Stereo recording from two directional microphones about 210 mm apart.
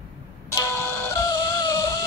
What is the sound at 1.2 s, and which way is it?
Music, 15° left (ahead or behind).